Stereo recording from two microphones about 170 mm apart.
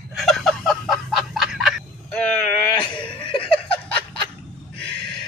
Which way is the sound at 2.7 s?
30° left (ahead or behind).